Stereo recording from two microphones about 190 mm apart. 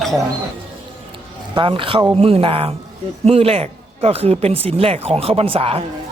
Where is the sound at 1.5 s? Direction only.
25° right (ahead or behind).